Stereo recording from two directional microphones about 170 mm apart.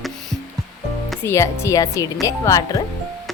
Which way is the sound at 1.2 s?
15° left (ahead or behind).